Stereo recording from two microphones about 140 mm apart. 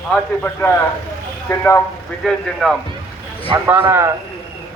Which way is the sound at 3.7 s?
15° right (ahead or behind).